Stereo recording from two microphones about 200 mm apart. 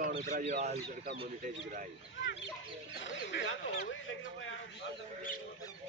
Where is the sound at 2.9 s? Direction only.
65° left (ahead or behind).